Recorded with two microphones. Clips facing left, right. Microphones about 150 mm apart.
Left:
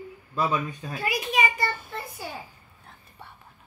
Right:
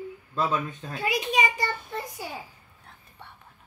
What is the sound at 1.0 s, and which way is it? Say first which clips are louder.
Speech: right 1 dB; 20° right (ahead or behind).